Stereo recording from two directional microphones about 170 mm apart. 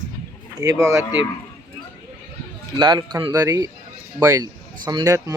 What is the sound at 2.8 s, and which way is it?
Speech, 25° right (ahead or behind).